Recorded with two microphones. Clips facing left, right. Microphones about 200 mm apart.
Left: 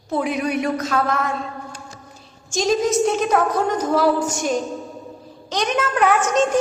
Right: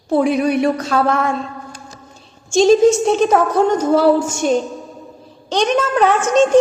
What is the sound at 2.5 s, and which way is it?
A woman's voice, 30° right (ahead or behind).